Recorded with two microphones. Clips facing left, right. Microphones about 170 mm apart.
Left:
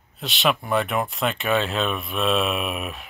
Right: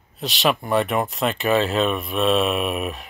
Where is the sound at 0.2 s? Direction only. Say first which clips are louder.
Right 2 dB; centre (ahead or behind).